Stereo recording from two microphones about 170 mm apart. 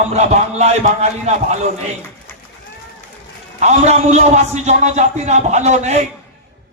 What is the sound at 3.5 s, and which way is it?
A man's voice, 40° right (ahead or behind).